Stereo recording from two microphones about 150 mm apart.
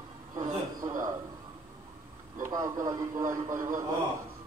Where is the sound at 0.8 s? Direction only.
25° right (ahead or behind).